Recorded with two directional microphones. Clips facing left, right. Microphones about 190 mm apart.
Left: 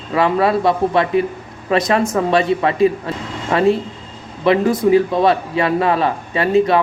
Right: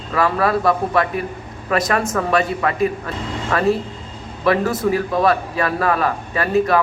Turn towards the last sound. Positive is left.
turn(degrees=25)  # may be behind; listen again after turning